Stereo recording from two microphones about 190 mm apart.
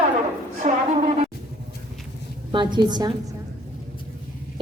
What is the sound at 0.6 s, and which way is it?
Speech, 40° right (ahead or behind).